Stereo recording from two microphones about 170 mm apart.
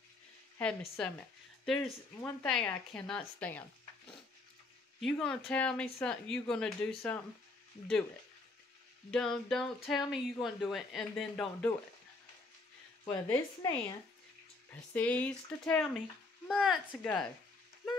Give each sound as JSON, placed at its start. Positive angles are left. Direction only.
{"t": 0.6, "sound": "speech", "side_deg": 5}
{"t": 2.4, "sound": "speech", "side_deg": 5}
{"t": 5.0, "sound": "speech", "side_deg": 5}
{"t": 9.1, "sound": "speech", "side_deg": 5}
{"t": 13.1, "sound": "a woman's voice", "side_deg": 20}
{"t": 15.0, "sound": "speech", "side_deg": 10}